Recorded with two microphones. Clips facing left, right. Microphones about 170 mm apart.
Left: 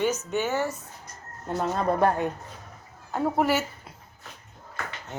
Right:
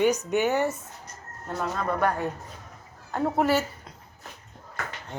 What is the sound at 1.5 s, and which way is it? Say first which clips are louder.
Speech: left 3 dB; 35° left (ahead or behind).